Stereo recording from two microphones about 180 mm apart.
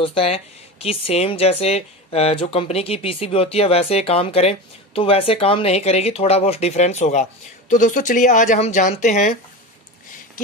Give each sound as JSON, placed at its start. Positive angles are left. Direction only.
{"t": 0.0, "sound": "speech", "side_deg": 30}